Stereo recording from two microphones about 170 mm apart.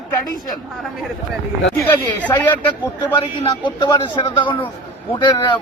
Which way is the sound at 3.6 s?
25° left (ahead or behind).